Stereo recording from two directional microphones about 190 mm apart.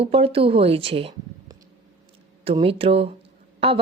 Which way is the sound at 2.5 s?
30° right (ahead or behind).